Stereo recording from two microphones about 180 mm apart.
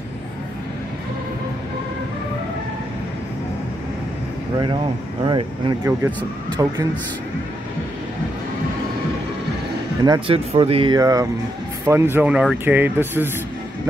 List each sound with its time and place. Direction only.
5.2 s speech: 25° right (ahead or behind)
10.0 s speech: 25° right (ahead or behind)